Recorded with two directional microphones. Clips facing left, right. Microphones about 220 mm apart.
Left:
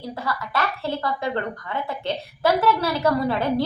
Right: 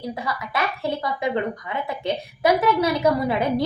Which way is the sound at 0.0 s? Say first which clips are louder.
Right 1 dB; 15° right (ahead or behind).